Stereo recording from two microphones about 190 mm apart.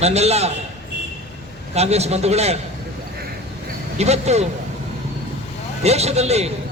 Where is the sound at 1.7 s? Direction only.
35° right (ahead or behind).